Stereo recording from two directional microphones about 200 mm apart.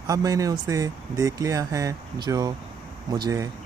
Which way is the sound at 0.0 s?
15° right (ahead or behind).